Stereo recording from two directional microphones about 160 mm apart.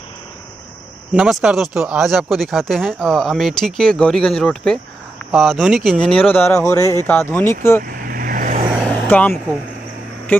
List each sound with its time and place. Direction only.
1.1 s speech: 5° right (ahead or behind); by 7.8 s 15° left (ahead or behind)
7.8 s vehicle: 65° right (ahead or behind)
8.8 s vehicle: 10° left (ahead or behind)